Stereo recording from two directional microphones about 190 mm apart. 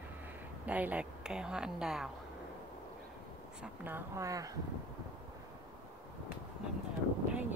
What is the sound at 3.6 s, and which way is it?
Speech, 10° right (ahead or behind).